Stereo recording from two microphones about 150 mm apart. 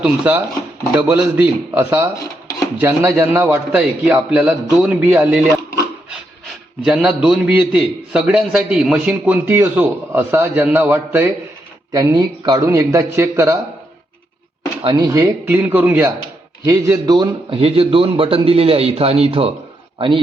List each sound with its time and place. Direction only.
0.0 s a man's voice: 10° right (ahead or behind)
6.8 s a man's voice: 5° right (ahead or behind)
11.9 s a man's voice: 25° right (ahead or behind)
14.8 s a man's voice: 25° right (ahead or behind)
17.6 s a man's voice: 40° right (ahead or behind)